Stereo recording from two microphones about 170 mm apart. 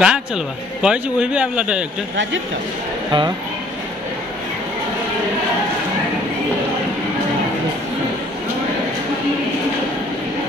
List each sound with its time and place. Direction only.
0.0 s speech: 5° right (ahead or behind)
3.1 s speech: 25° right (ahead or behind)